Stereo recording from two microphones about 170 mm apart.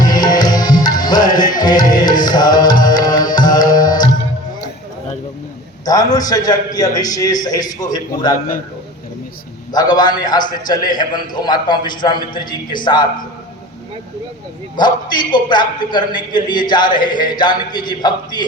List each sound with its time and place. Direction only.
0.0 s tabla: 25° left (ahead or behind)
5.8 s a man's voice: 20° left (ahead or behind)
8.3 s a man's voice: 50° left (ahead or behind)
9.7 s a man's voice: 25° left (ahead or behind)
14.8 s a man's voice: 25° left (ahead or behind)